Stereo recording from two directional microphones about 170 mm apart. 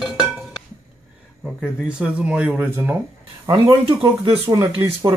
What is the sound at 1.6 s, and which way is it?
Speech, 5° right (ahead or behind).